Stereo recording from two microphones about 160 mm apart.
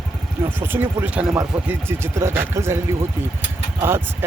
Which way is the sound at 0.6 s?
10° right (ahead or behind).